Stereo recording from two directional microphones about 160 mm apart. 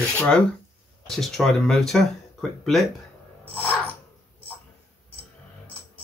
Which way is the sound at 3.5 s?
10° left (ahead or behind).